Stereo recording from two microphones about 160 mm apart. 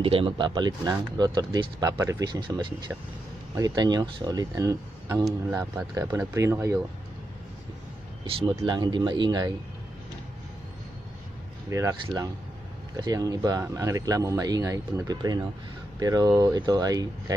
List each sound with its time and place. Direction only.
0.0 s speech: 35° right (ahead or behind); by 6.8 s 20° right (ahead or behind)
8.2 s speech: 30° right (ahead or behind)
11.7 s speech: 20° right (ahead or behind)